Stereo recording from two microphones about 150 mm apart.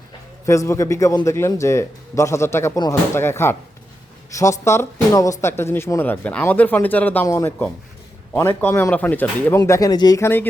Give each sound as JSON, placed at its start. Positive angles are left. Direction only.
{"t": 0.4, "sound": "a man's voice", "side_deg": 20}